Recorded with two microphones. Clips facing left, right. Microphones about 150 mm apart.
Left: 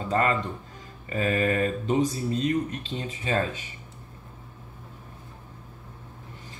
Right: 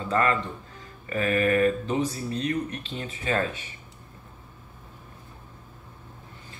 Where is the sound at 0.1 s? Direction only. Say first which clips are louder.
Even; 25° left (ahead or behind).